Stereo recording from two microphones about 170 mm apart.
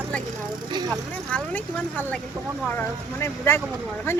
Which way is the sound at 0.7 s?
25° right (ahead or behind).